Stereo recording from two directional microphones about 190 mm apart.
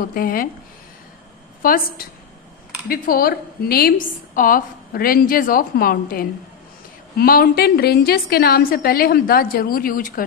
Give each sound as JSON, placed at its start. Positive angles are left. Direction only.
{"t": 0.0, "sound": "a woman's voice", "side_deg": 50}
{"t": 1.6, "sound": "a woman's voice", "side_deg": 50}